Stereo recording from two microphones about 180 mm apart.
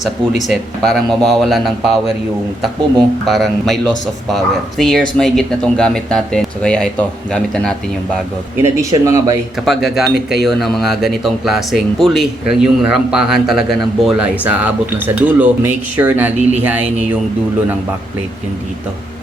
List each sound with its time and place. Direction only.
0.4 s speech: centre (ahead or behind)
3.2 s speech: centre (ahead or behind)
8.6 s speech: 15° right (ahead or behind)
9.6 s speech: centre (ahead or behind)